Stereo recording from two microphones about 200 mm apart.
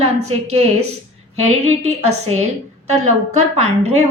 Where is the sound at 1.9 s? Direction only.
35° right (ahead or behind).